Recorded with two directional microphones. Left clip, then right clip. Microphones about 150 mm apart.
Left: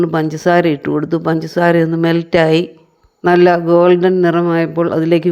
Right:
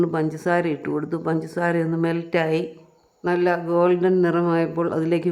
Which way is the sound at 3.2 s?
45° left (ahead or behind).